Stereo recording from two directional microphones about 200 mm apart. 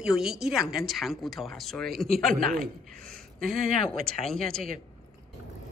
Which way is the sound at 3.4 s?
Centre (ahead or behind).